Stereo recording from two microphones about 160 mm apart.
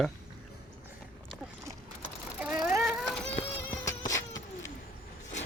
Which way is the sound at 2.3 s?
10° right (ahead or behind).